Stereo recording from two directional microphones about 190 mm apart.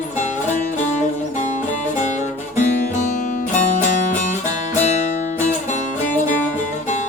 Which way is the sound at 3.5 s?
40° left (ahead or behind).